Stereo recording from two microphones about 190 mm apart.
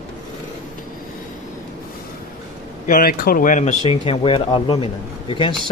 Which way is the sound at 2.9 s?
45° left (ahead or behind).